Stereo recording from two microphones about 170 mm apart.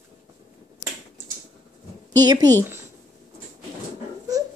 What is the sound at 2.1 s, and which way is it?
Speech, 25° right (ahead or behind).